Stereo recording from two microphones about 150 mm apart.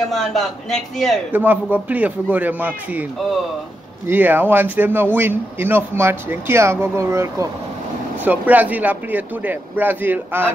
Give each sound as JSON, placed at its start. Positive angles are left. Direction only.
{"t": 0.1, "sound": "speech", "side_deg": 0}
{"t": 1.3, "sound": "speech", "side_deg": -10}